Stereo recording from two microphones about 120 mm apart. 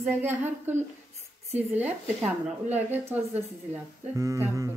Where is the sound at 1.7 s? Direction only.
15° right (ahead or behind).